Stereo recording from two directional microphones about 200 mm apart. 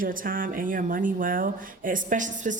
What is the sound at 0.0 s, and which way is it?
Speech, 45° right (ahead or behind).